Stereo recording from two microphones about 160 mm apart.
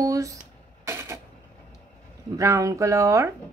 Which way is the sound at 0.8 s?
15° right (ahead or behind).